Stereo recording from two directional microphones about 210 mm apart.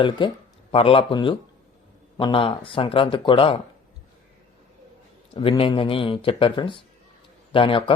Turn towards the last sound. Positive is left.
turn(degrees=25)  # may be behind; listen again after turning